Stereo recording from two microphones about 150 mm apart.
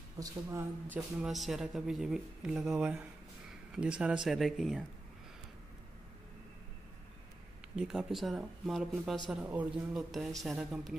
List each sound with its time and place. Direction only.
0.2 s speech: 20° right (ahead or behind)
0.9 s speech: 5° right (ahead or behind)
7.7 s speech: 5° right (ahead or behind)